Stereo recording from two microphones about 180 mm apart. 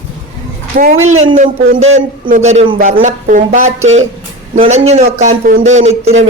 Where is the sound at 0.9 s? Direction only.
35° right (ahead or behind).